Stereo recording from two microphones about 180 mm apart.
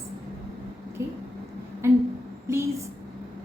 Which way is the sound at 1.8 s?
15° right (ahead or behind).